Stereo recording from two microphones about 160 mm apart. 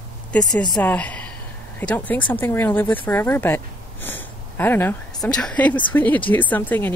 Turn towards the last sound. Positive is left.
turn(degrees=10)  # may be behind; listen again after turning